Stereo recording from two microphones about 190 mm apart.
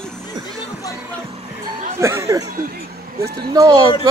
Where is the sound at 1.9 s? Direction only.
15° right (ahead or behind).